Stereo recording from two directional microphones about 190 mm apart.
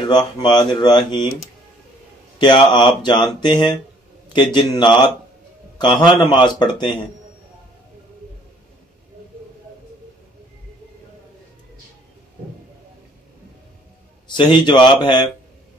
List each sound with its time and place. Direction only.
0.4 s speech: 20° left (ahead or behind)
2.3 s a man's voice: 25° left (ahead or behind)
14.2 s speech: 25° left (ahead or behind)